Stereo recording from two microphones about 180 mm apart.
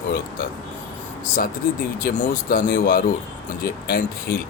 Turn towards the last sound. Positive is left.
turn(degrees=55)  # may be behind; listen again after turning